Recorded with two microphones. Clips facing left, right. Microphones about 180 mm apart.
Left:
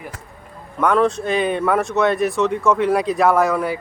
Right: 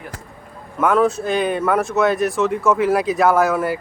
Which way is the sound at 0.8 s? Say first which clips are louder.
Right 1 dB; 5° right (ahead or behind).